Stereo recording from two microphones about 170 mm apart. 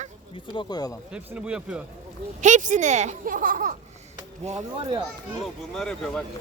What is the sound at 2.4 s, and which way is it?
A child's voice, 45° right (ahead or behind).